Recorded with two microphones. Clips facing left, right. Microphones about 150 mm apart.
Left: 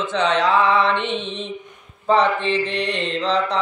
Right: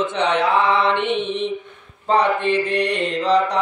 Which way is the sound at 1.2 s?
60° right (ahead or behind).